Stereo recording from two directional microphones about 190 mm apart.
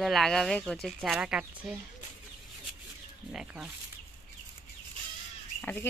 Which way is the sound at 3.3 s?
5° right (ahead or behind).